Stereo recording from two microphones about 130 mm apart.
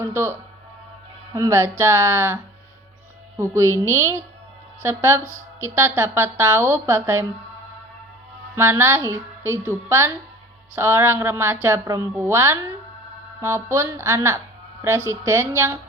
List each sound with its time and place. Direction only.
0.0 s a woman's voice: 20° right (ahead or behind)
8.5 s a woman's voice: 20° right (ahead or behind)